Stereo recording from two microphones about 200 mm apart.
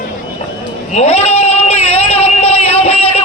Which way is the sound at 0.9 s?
30° left (ahead or behind).